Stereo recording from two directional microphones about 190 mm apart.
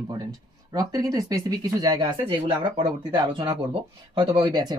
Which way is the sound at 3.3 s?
15° right (ahead or behind).